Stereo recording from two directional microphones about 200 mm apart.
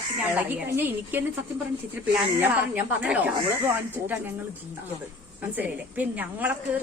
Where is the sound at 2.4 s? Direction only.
5° right (ahead or behind).